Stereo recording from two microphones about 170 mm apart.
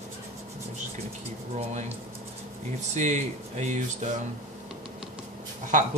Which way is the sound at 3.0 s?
45° right (ahead or behind).